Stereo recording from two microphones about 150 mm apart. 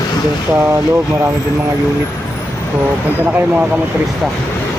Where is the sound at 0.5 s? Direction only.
20° right (ahead or behind).